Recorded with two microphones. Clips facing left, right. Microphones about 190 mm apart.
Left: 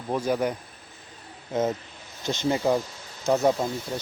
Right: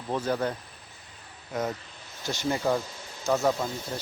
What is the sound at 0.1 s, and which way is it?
Speech, 10° left (ahead or behind).